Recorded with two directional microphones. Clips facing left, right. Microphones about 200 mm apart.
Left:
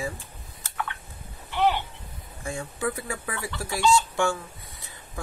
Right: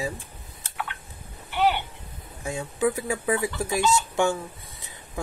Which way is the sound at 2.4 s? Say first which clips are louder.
Right 5 dB; 20° right (ahead or behind).